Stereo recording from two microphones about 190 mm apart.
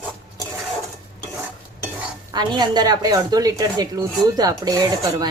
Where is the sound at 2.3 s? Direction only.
20° right (ahead or behind).